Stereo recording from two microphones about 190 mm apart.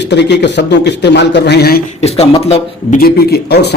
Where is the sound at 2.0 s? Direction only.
35° left (ahead or behind).